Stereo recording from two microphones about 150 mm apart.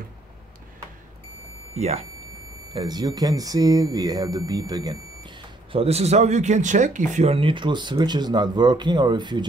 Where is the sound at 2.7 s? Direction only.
30° right (ahead or behind).